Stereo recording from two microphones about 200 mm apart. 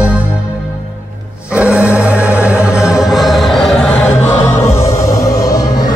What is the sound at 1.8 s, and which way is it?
Music, 15° left (ahead or behind).